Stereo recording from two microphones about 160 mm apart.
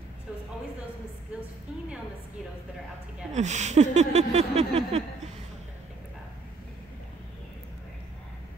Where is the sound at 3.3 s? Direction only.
45° right (ahead or behind).